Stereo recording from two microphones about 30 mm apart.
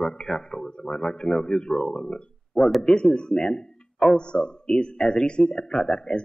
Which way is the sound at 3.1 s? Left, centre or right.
Left.